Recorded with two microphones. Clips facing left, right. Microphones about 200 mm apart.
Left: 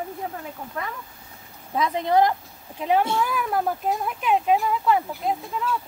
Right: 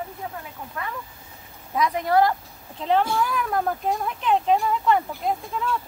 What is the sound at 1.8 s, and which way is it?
Speech, 25° left (ahead or behind).